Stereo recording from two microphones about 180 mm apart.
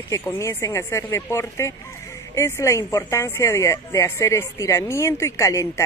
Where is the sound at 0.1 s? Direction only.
15° left (ahead or behind).